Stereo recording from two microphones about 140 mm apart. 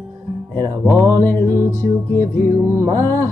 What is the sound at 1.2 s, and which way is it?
Music, 15° left (ahead or behind).